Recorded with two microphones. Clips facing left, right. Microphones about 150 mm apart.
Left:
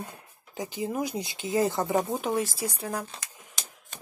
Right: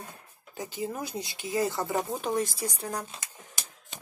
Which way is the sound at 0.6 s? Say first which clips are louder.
Left 4 dB; 15° left (ahead or behind).